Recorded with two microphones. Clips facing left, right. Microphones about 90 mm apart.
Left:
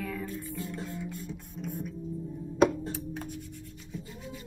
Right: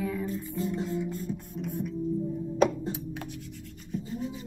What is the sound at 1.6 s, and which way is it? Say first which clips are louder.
Music: right 2 dB; 70° right (ahead or behind).